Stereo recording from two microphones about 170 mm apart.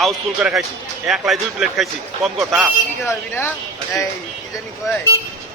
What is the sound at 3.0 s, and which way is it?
Speech, 15° left (ahead or behind).